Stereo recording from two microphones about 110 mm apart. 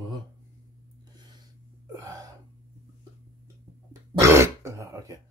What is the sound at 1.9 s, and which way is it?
Hiccup, 35° right (ahead or behind).